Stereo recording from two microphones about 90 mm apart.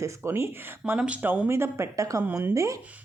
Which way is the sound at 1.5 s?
30° right (ahead or behind).